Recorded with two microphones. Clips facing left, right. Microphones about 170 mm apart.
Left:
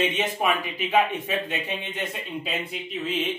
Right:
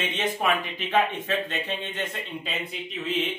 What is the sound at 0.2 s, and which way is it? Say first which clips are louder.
A man's voice: left 1 dB; 10° left (ahead or behind).